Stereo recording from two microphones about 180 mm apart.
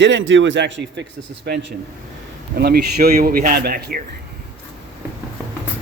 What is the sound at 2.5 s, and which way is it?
A man's voice, 60° right (ahead or behind).